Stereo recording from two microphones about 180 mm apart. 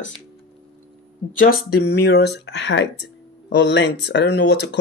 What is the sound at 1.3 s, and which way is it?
Speech, 55° left (ahead or behind).